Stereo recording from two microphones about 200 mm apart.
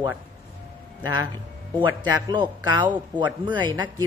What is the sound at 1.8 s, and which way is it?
A man's voice, 20° right (ahead or behind).